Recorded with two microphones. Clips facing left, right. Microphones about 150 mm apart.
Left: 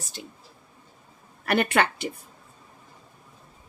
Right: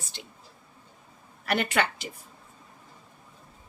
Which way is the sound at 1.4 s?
55° left (ahead or behind).